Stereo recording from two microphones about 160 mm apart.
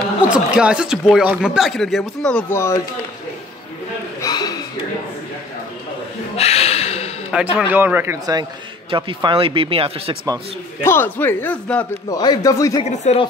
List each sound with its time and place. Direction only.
0.3 s speech: 5° right (ahead or behind)
2.5 s speech: 15° left (ahead or behind)
4.2 s a sound: 25° left (ahead or behind)
6.3 s a sound: 40° left (ahead or behind)
7.5 s speech: 10° right (ahead or behind)
8.9 s speech: 30° right (ahead or behind)
10.8 s speech: 15° left (ahead or behind)
12.1 s speech: 25° left (ahead or behind)
12.8 s speech: 45° left (ahead or behind)